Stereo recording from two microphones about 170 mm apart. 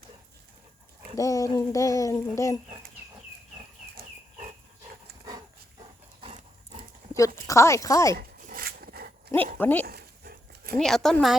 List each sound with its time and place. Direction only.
1.1 s speech: 20° left (ahead or behind)
6.2 s dog: 35° right (ahead or behind)
7.4 s speech: 15° left (ahead or behind)
8.2 s a sound: 55° right (ahead or behind)
9.6 s speech: 10° left (ahead or behind)
9.8 s dog: 65° right (ahead or behind)
10.8 s speech: 5° left (ahead or behind)